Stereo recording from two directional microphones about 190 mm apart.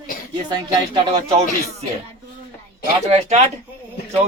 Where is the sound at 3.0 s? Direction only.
35° right (ahead or behind).